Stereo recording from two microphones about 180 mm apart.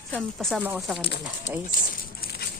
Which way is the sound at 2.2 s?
60° left (ahead or behind).